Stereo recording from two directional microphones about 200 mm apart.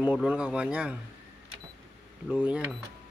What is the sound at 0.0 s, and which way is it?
Speech, 5° right (ahead or behind).